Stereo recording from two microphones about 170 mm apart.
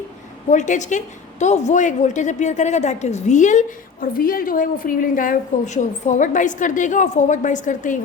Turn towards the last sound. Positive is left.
turn(degrees=50)  # may be behind; listen again after turning